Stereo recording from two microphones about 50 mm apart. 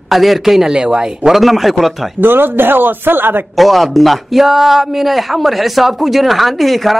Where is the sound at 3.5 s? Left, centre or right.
Centre.